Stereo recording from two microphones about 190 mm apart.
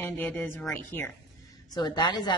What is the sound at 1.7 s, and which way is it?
Speech, 20° left (ahead or behind).